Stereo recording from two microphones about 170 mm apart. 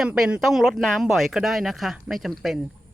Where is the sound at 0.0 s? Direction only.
5° right (ahead or behind).